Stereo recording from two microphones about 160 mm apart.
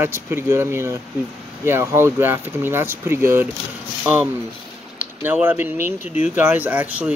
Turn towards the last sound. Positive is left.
turn(degrees=-10)  # may be behind; listen again after turning